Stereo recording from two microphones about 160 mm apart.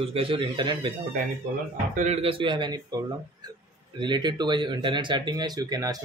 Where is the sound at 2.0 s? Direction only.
40° right (ahead or behind); by 6.0 s 25° right (ahead or behind).